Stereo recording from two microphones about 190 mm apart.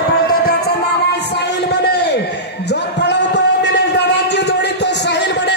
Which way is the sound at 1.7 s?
60° left (ahead or behind).